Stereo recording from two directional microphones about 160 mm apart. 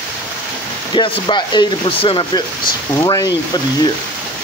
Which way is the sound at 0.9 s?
30° left (ahead or behind).